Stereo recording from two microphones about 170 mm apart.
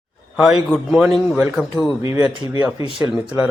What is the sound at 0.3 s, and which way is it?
A man's voice, 5° right (ahead or behind).